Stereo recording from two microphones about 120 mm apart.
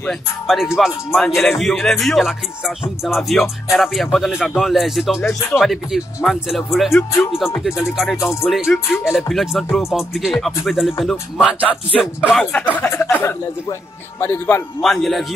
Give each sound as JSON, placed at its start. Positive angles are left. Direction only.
{"t": 0.5, "sound": "speech", "side_deg": 0}
{"t": 6.9, "sound": "a man's voice", "side_deg": 20}
{"t": 7.6, "sound": "speech", "side_deg": -5}
{"t": 12.4, "sound": "a man's voice", "side_deg": 10}
{"t": 14.8, "sound": "speech", "side_deg": 0}